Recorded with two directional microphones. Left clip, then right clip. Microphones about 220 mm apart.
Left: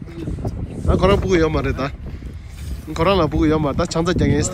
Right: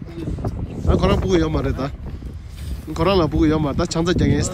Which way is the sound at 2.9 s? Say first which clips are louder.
Left 1 dB; 10° right (ahead or behind).